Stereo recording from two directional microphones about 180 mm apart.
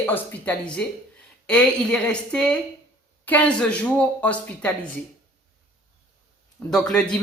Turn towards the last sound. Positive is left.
turn(degrees=5)  # may be behind; listen again after turning